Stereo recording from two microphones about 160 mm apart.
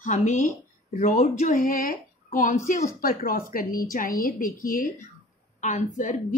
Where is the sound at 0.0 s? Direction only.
50° left (ahead or behind).